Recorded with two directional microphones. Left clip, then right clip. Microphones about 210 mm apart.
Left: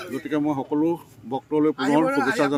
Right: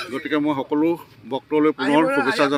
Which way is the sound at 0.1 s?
10° left (ahead or behind).